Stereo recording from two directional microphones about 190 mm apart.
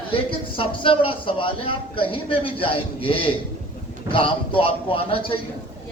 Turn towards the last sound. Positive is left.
turn(degrees=30)  # may be behind; listen again after turning